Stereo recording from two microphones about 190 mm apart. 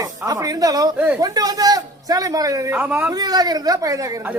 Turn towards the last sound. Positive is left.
turn(degrees=-20)  # may be behind; listen again after turning